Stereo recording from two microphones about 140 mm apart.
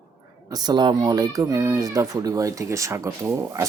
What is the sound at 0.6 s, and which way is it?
Speech, 30° right (ahead or behind).